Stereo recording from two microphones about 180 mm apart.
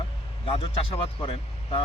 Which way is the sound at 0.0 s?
30° left (ahead or behind).